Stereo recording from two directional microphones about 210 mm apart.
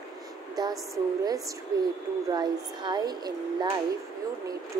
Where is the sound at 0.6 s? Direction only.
20° right (ahead or behind).